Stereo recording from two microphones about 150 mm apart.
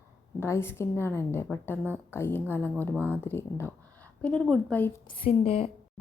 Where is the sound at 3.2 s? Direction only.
15° left (ahead or behind).